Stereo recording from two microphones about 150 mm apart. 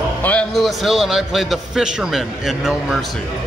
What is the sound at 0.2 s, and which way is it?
A man's voice, 10° left (ahead or behind).